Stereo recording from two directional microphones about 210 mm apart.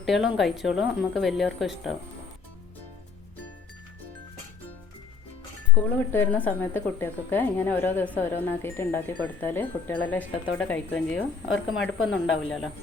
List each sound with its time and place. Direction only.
0.0 s speech: centre (ahead or behind)
5.7 s speech: 10° left (ahead or behind)
11.5 s speech: 70° left (ahead or behind)
12.1 s speech: centre (ahead or behind)